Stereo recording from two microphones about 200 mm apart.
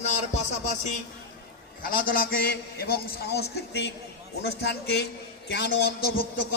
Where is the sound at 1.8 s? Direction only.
45° left (ahead or behind).